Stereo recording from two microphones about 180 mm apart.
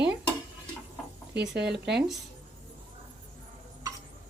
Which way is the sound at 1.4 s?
65° right (ahead or behind).